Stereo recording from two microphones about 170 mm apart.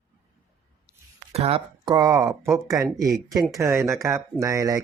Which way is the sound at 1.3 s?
35° right (ahead or behind).